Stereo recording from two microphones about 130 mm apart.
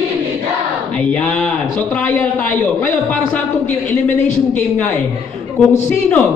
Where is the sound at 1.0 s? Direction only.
10° left (ahead or behind).